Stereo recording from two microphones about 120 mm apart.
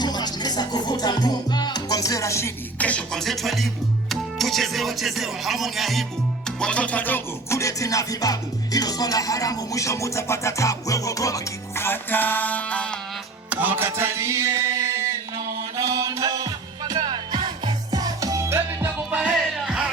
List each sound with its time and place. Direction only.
0.0 s music: 35° left (ahead or behind)
2.7 s music: 10° left (ahead or behind)
13.5 s music: 15° right (ahead or behind)